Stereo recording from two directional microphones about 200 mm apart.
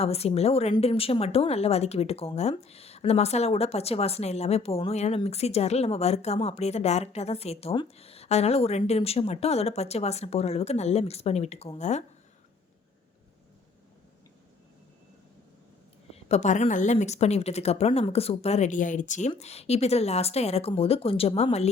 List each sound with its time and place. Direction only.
0.0 s speech: 30° left (ahead or behind)
16.1 s speech: 35° left (ahead or behind)